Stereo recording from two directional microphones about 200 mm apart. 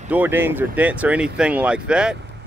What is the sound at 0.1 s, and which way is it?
Speech, 10° right (ahead or behind).